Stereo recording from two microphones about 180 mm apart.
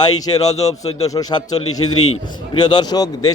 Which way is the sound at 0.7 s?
35° left (ahead or behind).